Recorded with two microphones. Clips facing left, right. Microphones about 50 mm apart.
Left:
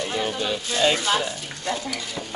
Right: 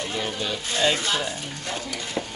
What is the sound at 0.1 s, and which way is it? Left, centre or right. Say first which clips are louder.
Speech: left 4 dB; centre.